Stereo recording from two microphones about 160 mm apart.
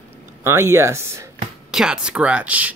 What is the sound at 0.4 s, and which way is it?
Speech, 15° right (ahead or behind).